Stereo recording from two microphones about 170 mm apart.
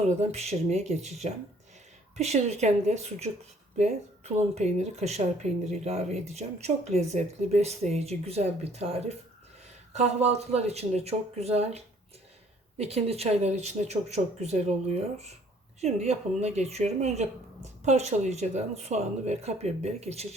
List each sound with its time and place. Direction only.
0.2 s speech: 40° right (ahead or behind)